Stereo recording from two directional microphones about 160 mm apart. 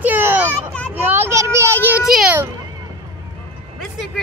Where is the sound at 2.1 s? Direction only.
Centre (ahead or behind).